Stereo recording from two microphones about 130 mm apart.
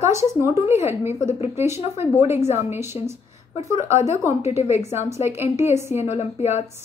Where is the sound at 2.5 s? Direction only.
20° right (ahead or behind).